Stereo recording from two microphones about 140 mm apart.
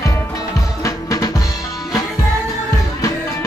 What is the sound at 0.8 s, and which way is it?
Music, 25° left (ahead or behind).